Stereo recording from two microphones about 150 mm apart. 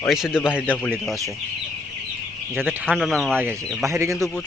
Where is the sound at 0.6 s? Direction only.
10° left (ahead or behind).